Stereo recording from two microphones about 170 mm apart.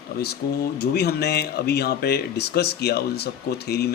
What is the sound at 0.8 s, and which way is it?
Speech, 70° left (ahead or behind).